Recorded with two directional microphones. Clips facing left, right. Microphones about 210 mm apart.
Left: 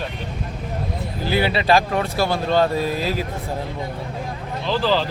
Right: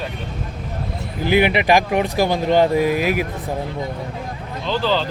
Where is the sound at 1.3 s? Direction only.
15° right (ahead or behind).